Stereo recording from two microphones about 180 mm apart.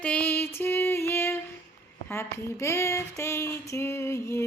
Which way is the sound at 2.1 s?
15° left (ahead or behind).